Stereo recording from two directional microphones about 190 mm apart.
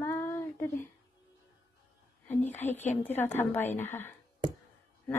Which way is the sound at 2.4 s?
10° left (ahead or behind).